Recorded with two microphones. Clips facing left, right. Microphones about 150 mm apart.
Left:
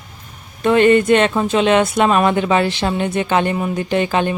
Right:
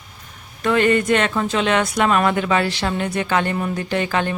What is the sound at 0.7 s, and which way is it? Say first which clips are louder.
Speech: left 5 dB; 25° left (ahead or behind).